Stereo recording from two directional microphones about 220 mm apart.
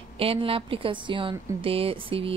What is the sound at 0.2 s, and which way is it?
A woman's voice, 25° right (ahead or behind).